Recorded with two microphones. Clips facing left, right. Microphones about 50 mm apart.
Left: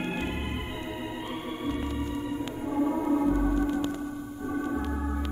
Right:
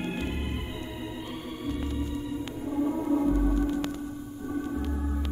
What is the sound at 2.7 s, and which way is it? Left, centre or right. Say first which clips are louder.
Music: left 1 dB; left.